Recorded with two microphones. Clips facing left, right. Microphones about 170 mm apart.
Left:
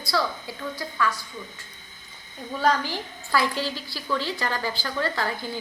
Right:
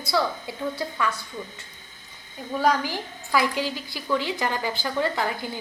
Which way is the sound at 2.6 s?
10° right (ahead or behind).